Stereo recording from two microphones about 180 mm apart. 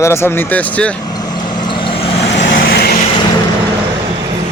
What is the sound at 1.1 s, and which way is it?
Vehicle, 20° left (ahead or behind).